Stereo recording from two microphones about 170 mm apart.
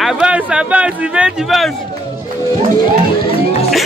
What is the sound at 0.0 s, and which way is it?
Speech, 5° right (ahead or behind).